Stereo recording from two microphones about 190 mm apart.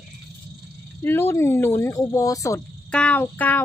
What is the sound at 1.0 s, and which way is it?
Speech, 10° left (ahead or behind).